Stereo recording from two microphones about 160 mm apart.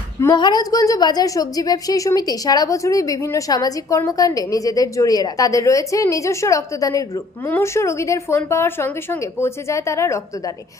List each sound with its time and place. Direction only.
0.2 s a woman's voice: 25° left (ahead or behind)